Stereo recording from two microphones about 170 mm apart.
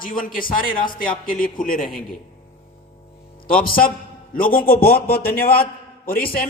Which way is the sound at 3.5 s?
60° left (ahead or behind).